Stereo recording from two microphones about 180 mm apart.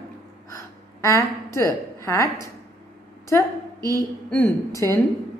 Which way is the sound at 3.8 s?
20° right (ahead or behind).